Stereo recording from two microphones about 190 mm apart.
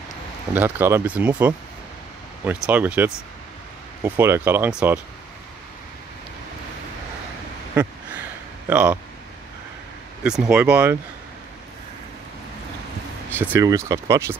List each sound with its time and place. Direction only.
0.5 s speech: 10° right (ahead or behind)
7.7 s a sound: 5° right (ahead or behind)
8.6 s speech: 10° right (ahead or behind)
10.2 s speech: 5° right (ahead or behind)
13.3 s speech: 10° right (ahead or behind)